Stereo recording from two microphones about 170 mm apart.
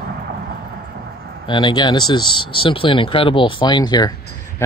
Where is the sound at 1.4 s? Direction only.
25° left (ahead or behind).